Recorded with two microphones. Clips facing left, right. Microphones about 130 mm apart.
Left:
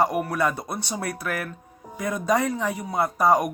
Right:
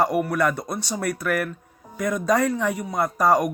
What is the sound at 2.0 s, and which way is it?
Speech, 30° left (ahead or behind).